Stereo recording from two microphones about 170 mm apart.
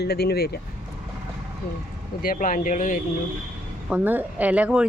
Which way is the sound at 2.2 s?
55° left (ahead or behind).